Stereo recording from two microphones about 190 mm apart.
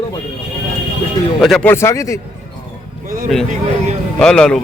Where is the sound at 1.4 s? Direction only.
Centre (ahead or behind).